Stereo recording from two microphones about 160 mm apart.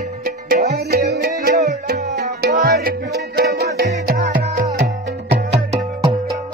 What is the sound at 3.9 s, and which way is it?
Music, 65° right (ahead or behind).